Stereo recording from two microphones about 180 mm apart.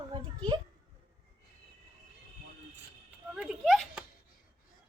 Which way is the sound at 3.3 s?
Centre (ahead or behind).